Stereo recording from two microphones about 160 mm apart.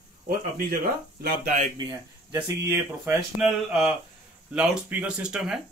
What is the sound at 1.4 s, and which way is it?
Speech, 55° right (ahead or behind).